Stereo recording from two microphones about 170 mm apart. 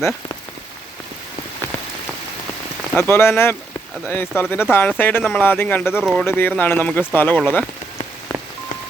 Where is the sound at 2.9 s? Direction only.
15° left (ahead or behind).